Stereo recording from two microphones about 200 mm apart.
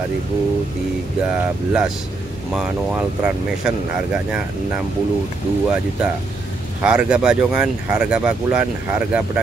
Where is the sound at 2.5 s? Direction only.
5° right (ahead or behind).